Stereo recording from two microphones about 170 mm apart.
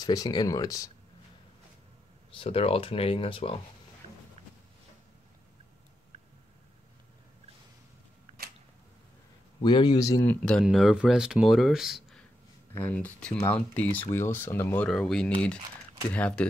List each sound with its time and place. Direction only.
0.0 s speech: 20° left (ahead or behind)
2.3 s speech: 35° left (ahead or behind)
9.6 s speech: 25° left (ahead or behind)
10.2 s speech: 5° left (ahead or behind)
12.7 s speech: 10° left (ahead or behind)
14.9 s speech: 5° left (ahead or behind)